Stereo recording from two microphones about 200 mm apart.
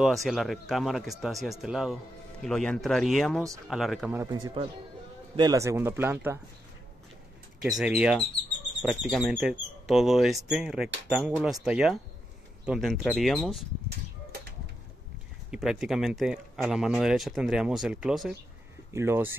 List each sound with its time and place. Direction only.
0.0 s speech: centre (ahead or behind)
4.3 s speech: 20° right (ahead or behind)
7.6 s speech: 5° right (ahead or behind)
15.5 s speech: 5° right (ahead or behind)